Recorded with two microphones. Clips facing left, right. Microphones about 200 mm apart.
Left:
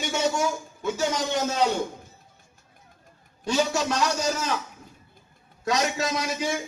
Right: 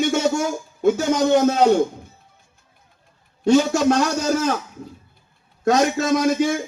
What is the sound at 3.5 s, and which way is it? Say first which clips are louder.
A man's voice: right 9 dB; 50° right (ahead or behind).